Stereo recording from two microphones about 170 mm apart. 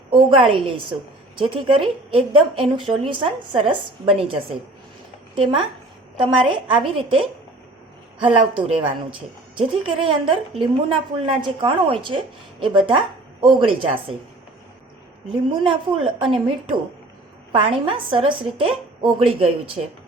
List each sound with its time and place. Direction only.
0.1 s a woman's voice: 30° right (ahead or behind)
5.4 s a woman's voice: 30° right (ahead or behind)
15.6 s a woman's voice: 30° right (ahead or behind)